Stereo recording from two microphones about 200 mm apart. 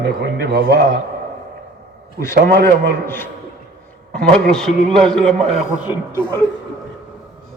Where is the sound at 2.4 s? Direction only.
55° right (ahead or behind).